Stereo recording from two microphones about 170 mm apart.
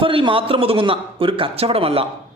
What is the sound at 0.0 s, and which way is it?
A man's voice, 30° right (ahead or behind).